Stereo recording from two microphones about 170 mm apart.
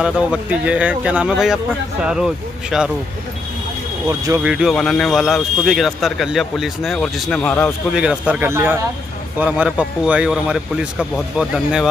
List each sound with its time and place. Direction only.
0.0 s speech: 5° right (ahead or behind)
4.1 s speech: 20° right (ahead or behind)
4.4 s speech: 5° right (ahead or behind)
7.9 s speech: 5° right (ahead or behind)